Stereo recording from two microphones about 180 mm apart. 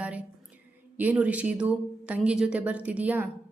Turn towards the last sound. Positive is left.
turn(degrees=-10)  # may be behind; listen again after turning